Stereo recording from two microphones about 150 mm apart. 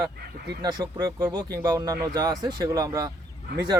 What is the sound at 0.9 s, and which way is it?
Speech, 15° right (ahead or behind).